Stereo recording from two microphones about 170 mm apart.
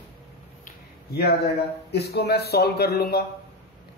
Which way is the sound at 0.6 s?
60° left (ahead or behind).